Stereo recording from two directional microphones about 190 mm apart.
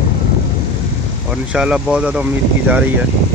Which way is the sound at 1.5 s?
5° right (ahead or behind).